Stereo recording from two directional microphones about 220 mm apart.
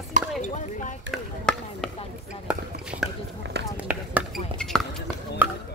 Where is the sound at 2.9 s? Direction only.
35° right (ahead or behind).